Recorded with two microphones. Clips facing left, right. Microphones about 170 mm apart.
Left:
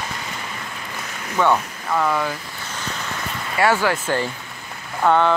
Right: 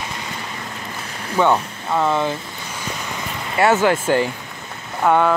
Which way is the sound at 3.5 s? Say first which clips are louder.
Right 3 dB; 25° right (ahead or behind).